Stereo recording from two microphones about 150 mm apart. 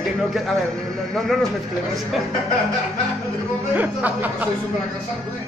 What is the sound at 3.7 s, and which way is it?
Speech, 10° right (ahead or behind).